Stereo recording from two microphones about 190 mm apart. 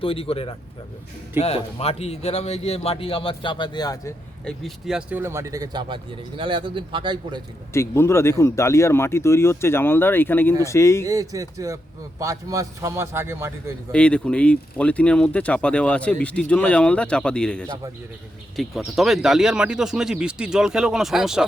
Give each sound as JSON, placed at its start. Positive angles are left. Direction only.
{"t": 0.0, "sound": "a man's voice", "side_deg": 30}
{"t": 4.4, "sound": "speech", "side_deg": 0}
{"t": 7.7, "sound": "speech", "side_deg": 15}
{"t": 11.0, "sound": "speech", "side_deg": -20}
{"t": 13.9, "sound": "speech", "side_deg": 5}